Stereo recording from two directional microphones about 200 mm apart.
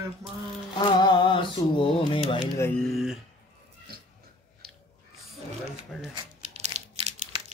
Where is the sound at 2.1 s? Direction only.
25° left (ahead or behind).